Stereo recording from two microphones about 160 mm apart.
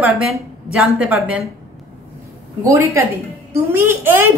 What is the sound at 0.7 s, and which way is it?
Speech, 5° right (ahead or behind).